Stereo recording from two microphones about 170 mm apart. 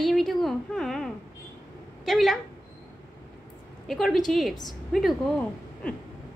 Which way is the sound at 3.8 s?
Centre (ahead or behind).